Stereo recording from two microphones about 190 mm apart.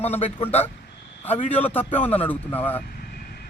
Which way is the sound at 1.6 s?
10° left (ahead or behind).